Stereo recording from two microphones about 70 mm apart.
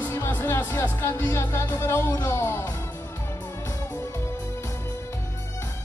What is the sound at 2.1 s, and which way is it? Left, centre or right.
Music, left.